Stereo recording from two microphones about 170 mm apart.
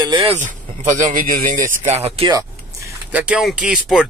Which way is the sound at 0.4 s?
45° right (ahead or behind).